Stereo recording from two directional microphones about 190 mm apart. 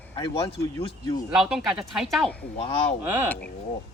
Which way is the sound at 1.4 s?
Centre (ahead or behind).